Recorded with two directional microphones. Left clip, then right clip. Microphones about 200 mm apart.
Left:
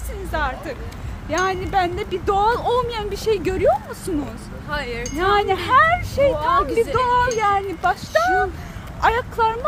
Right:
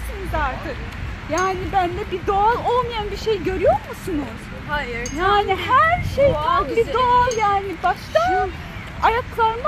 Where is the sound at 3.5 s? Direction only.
15° left (ahead or behind).